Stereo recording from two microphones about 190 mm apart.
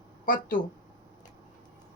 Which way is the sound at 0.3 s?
45° left (ahead or behind).